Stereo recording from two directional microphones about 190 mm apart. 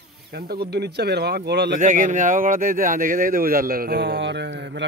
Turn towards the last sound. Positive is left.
turn(degrees=-70)  # may be behind; listen again after turning